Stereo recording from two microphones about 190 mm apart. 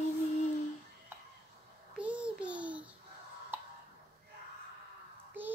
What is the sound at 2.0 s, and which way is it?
Babbling, 5° right (ahead or behind).